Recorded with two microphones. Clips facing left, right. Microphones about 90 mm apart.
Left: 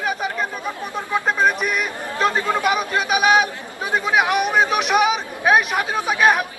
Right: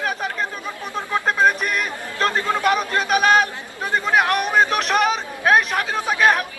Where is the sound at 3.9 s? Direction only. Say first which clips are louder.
Even; 5° left (ahead or behind).